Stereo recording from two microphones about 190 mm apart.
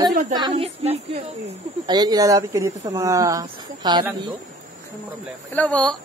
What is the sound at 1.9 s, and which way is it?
Speech, 20° right (ahead or behind).